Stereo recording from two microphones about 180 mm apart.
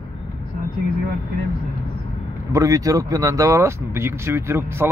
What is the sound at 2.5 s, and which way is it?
Speech, 20° right (ahead or behind).